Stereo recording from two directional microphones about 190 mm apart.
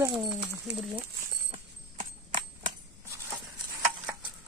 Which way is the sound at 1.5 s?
40° right (ahead or behind).